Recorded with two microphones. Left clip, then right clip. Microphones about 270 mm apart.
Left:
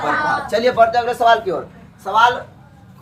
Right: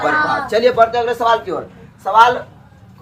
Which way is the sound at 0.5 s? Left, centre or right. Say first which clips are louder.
Right 1 dB; centre.